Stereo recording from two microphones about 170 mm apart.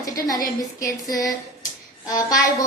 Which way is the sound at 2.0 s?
20° left (ahead or behind).